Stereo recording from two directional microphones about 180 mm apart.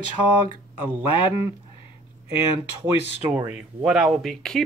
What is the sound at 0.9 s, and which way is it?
Speech, 10° right (ahead or behind).